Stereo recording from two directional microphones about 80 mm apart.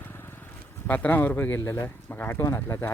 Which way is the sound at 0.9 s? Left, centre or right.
Left.